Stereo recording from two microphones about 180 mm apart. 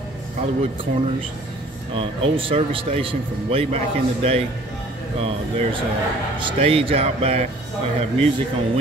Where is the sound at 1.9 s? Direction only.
30° right (ahead or behind).